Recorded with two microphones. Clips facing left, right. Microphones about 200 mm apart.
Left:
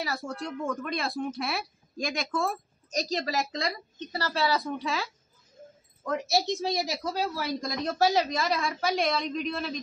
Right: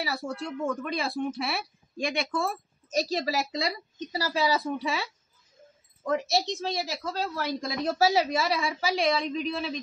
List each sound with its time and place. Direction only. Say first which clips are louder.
0.0 s speech: right 1 dB; centre (ahead or behind)
6.6 s a woman's voice: left 2 dB; 15° left (ahead or behind)
7.3 s speech: right 1 dB; centre (ahead or behind)